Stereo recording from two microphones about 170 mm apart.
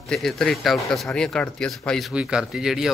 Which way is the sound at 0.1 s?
5° left (ahead or behind).